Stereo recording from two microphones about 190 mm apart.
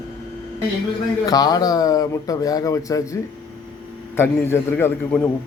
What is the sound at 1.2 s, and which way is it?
A man's voice, 20° left (ahead or behind).